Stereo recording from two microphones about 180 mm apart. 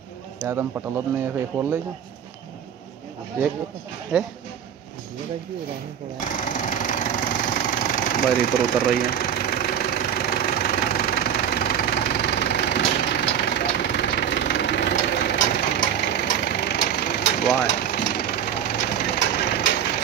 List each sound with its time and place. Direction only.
0.4 s speech: 10° right (ahead or behind)
4.1 s speech: 5° right (ahead or behind)
6.1 s engine: 45° left (ahead or behind); by 15.1 s 80° left
15.7 s vehicle: 70° left (ahead or behind)